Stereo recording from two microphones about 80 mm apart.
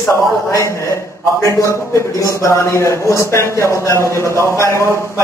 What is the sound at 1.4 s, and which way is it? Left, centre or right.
Speech, left.